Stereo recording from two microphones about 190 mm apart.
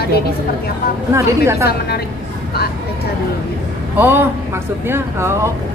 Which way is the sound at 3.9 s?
10° right (ahead or behind).